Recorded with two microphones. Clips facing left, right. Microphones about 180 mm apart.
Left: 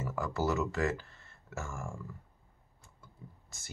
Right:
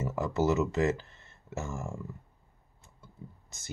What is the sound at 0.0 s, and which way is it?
Speech, 20° right (ahead or behind).